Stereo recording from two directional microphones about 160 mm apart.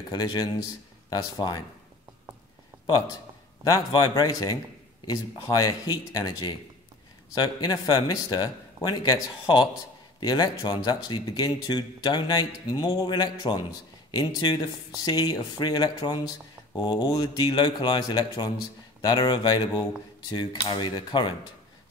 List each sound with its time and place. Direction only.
0.1 s speech: 25° left (ahead or behind)
3.9 s speech: 25° left (ahead or behind)